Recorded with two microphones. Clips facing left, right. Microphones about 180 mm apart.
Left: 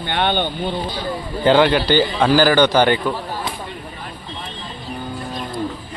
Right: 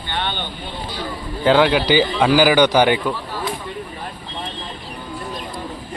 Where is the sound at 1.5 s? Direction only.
Centre (ahead or behind).